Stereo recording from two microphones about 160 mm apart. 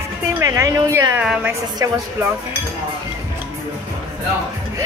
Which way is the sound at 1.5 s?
15° right (ahead or behind).